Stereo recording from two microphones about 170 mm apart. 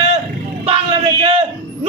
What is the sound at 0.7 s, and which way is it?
A man's voice, 35° right (ahead or behind).